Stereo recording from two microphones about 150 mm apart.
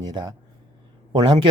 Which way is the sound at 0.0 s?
30° right (ahead or behind).